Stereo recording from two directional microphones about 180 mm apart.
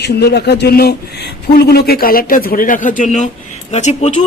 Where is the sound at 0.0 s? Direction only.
65° left (ahead or behind).